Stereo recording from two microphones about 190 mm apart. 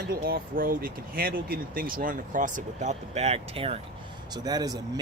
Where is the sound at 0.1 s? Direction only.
50° right (ahead or behind); by 3.8 s 30° right (ahead or behind).